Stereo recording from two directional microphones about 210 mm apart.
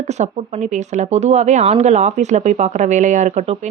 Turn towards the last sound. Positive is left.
turn(degrees=-35)  # may be behind; listen again after turning